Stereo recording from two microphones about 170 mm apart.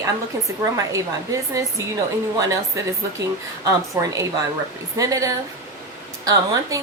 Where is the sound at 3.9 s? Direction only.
15° right (ahead or behind).